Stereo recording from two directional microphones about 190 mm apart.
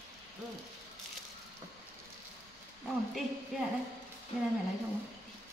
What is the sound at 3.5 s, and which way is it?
Speech, centre (ahead or behind).